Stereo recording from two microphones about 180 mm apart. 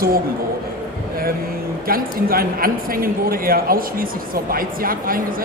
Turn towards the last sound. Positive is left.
turn(degrees=-50)  # may be behind; listen again after turning